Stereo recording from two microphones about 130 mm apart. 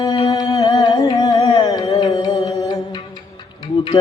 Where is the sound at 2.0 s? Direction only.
35° left (ahead or behind).